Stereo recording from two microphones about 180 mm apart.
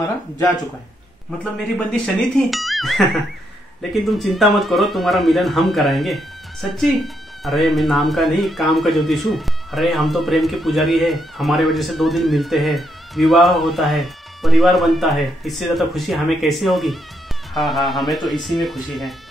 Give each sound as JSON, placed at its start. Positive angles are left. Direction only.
{"t": 1.4, "sound": "speech", "side_deg": 5}
{"t": 4.1, "sound": "speech", "side_deg": 0}